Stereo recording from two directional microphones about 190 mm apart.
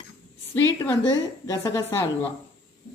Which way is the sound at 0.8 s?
20° left (ahead or behind).